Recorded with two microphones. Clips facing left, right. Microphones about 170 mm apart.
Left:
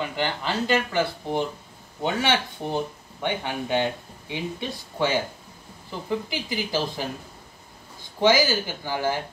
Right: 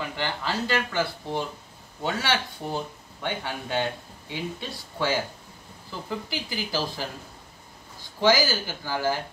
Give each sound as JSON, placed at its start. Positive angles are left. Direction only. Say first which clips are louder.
{"t": 0.1, "sound": "speech", "louder": "left 3 dB", "side_deg": 20}
{"t": 8.2, "sound": "speech", "louder": "left 2 dB", "side_deg": 20}